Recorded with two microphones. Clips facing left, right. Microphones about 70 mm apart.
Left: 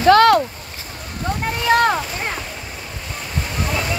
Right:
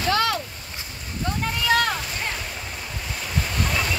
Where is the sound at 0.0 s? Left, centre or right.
Left.